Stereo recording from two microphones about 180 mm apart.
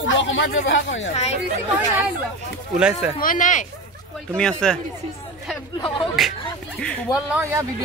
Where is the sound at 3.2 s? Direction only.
50° left (ahead or behind).